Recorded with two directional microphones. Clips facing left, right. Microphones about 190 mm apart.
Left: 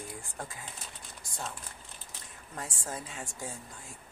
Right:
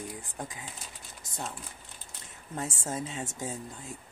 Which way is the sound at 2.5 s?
25° right (ahead or behind).